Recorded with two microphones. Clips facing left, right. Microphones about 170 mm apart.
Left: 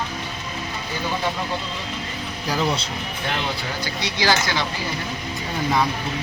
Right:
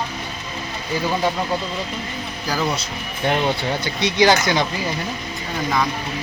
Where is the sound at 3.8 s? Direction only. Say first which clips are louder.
Right 7 dB; 20° right (ahead or behind).